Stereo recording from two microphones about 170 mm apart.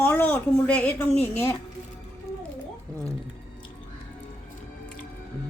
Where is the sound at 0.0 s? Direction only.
10° left (ahead or behind).